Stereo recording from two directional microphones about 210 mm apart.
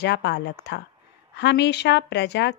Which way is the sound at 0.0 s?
55° left (ahead or behind).